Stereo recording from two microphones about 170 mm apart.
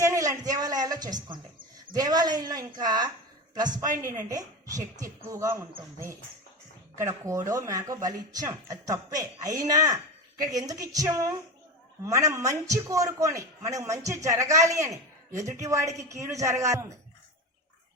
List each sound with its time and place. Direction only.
0.0 s a sound: 20° right (ahead or behind)
2.0 s a man's voice: 25° right (ahead or behind)
7.0 s a man's voice: 20° right (ahead or behind)